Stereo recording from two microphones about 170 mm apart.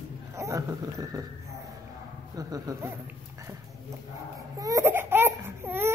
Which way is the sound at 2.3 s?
20° right (ahead or behind).